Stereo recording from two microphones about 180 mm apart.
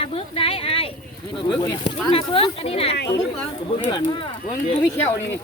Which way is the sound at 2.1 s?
30° left (ahead or behind).